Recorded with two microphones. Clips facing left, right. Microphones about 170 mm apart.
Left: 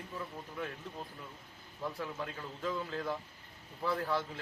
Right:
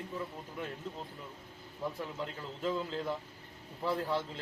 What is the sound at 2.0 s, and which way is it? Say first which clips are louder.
A man's voice: right 1 dB; 20° right (ahead or behind).